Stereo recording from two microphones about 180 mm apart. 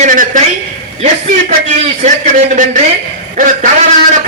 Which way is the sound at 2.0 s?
45° right (ahead or behind).